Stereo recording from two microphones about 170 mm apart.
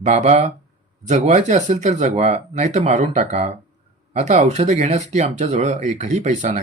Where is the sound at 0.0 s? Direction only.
40° right (ahead or behind).